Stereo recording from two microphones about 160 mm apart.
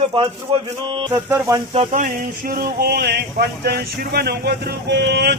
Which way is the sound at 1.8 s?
50° right (ahead or behind).